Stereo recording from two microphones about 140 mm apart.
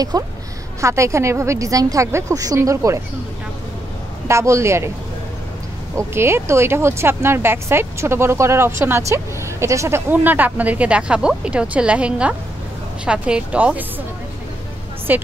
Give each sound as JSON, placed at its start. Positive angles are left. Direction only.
{"t": 0.1, "sound": "a woman's voice", "side_deg": -30}
{"t": 4.3, "sound": "a woman's voice", "side_deg": -20}
{"t": 5.9, "sound": "speech", "side_deg": -15}
{"t": 15.1, "sound": "speech", "side_deg": -10}